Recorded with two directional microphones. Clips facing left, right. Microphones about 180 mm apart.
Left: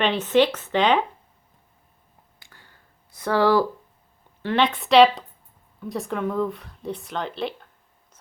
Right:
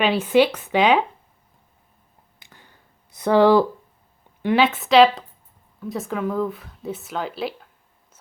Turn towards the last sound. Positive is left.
turn(degrees=-5)  # may be behind; listen again after turning